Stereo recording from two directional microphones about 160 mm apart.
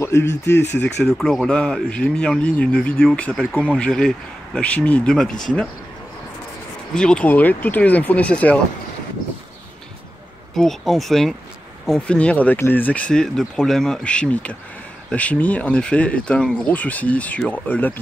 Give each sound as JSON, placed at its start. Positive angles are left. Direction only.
{"t": 0.0, "sound": "speech", "side_deg": 15}
{"t": 0.7, "sound": "speech", "side_deg": 5}
{"t": 6.9, "sound": "speech", "side_deg": 5}
{"t": 10.5, "sound": "speech", "side_deg": 0}